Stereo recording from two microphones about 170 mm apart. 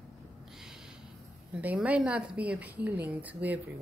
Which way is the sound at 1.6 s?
10° right (ahead or behind).